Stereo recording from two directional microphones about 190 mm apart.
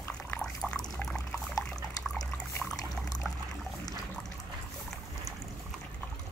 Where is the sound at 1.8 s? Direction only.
20° left (ahead or behind).